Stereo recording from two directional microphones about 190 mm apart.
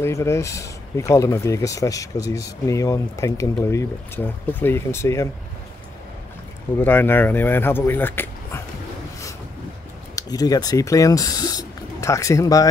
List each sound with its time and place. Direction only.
0.0 s speech: 15° left (ahead or behind)
6.8 s speech: 10° left (ahead or behind)
10.1 s speech: 20° left (ahead or behind)